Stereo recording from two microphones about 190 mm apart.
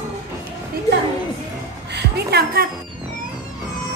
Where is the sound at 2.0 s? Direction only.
55° right (ahead or behind).